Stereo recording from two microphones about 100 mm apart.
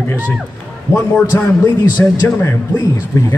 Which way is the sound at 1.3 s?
20° left (ahead or behind).